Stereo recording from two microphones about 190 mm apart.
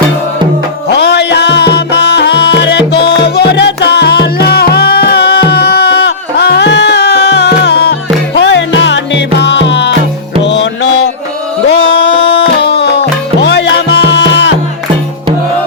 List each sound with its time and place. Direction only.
0.9 s music: 60° left (ahead or behind)